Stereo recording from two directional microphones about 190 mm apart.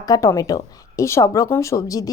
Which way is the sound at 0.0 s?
20° left (ahead or behind).